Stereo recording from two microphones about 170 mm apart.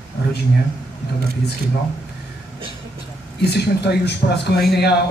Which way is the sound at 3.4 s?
75° left (ahead or behind).